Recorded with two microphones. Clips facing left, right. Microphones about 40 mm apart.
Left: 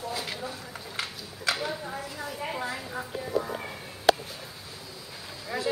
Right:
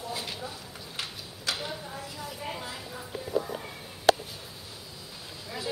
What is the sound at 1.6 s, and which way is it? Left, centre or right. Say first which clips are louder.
Speech: left 4 dB; left.